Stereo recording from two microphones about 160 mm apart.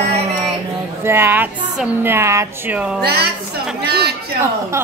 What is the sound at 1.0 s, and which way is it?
A woman's voice, 15° right (ahead or behind).